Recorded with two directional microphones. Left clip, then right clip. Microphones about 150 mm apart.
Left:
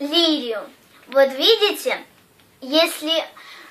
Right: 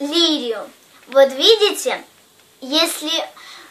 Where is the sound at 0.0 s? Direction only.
25° right (ahead or behind).